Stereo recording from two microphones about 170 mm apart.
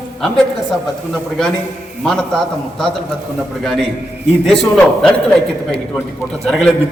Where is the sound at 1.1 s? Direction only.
Centre (ahead or behind).